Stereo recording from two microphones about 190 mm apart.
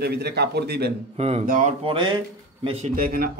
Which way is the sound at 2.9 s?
50° right (ahead or behind).